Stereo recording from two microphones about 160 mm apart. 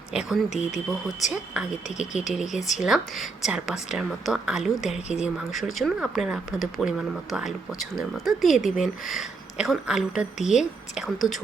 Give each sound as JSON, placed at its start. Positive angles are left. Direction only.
{"t": 0.1, "sound": "speech", "side_deg": -5}